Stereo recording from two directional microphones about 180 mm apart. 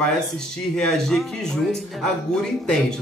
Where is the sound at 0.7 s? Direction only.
5° left (ahead or behind).